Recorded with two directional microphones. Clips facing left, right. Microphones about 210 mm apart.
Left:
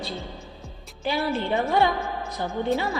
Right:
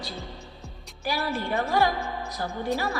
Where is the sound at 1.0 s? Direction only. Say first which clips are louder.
Left 3 dB; 20° left (ahead or behind).